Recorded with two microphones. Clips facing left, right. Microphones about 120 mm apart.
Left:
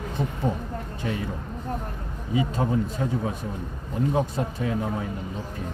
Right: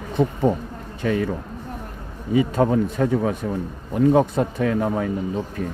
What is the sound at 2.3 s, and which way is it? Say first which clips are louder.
Speech: right 6 dB; 60° right (ahead or behind).